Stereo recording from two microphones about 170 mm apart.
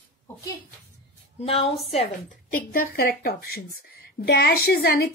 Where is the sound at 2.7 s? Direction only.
60° left (ahead or behind).